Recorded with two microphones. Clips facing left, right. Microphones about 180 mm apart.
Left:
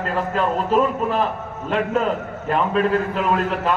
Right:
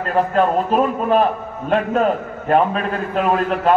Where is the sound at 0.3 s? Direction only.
60° right (ahead or behind).